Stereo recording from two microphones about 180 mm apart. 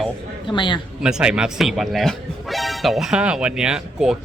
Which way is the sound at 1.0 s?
5° right (ahead or behind).